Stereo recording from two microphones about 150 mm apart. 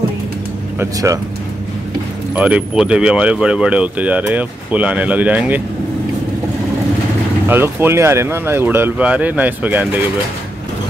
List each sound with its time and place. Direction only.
0.7 s speech: 20° right (ahead or behind)
2.3 s speech: 10° right (ahead or behind)
7.4 s speech: 15° right (ahead or behind)